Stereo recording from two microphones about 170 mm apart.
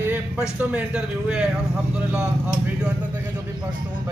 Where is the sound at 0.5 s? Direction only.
5° right (ahead or behind).